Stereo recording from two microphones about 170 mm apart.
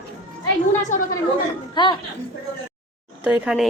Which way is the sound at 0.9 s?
50° left (ahead or behind).